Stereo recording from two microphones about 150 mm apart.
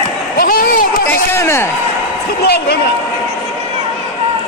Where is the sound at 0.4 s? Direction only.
75° left (ahead or behind).